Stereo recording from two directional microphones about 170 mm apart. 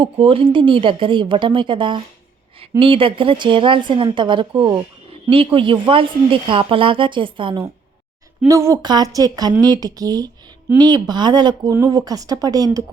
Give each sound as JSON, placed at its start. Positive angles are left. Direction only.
{"t": 0.0, "sound": "a woman's voice", "side_deg": -30}
{"t": 8.4, "sound": "a woman's voice", "side_deg": -15}